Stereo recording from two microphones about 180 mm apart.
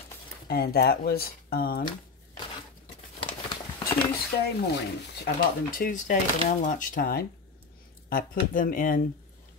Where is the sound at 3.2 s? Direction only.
25° left (ahead or behind).